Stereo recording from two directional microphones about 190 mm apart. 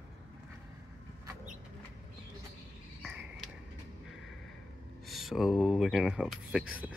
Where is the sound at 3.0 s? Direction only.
Centre (ahead or behind).